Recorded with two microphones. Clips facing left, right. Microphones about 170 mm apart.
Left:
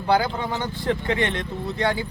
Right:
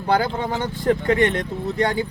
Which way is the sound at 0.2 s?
45° right (ahead or behind).